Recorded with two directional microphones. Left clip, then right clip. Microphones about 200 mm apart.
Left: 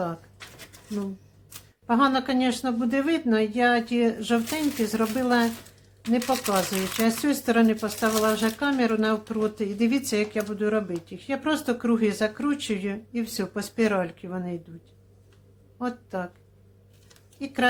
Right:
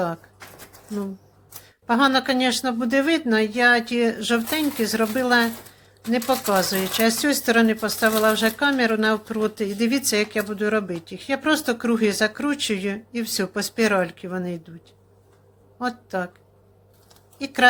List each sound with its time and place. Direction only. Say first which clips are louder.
1.9 s speech: right 4 dB; 10° right (ahead or behind)
15.8 s speech: right 5 dB; 10° right (ahead or behind)
17.4 s speech: right 7 dB; 15° right (ahead or behind)